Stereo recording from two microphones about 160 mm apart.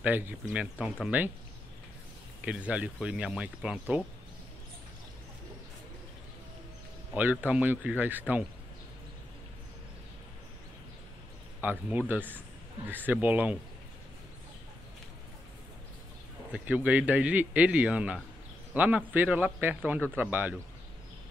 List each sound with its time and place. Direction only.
0.0 s a man's voice: 10° right (ahead or behind)
2.4 s a man's voice: 10° right (ahead or behind)
7.2 s a man's voice: 10° right (ahead or behind)
11.6 s a man's voice: 10° right (ahead or behind)
12.3 s a sound: 10° right (ahead or behind)
13.0 s a man's voice: 10° right (ahead or behind)
16.5 s a man's voice: 10° right (ahead or behind)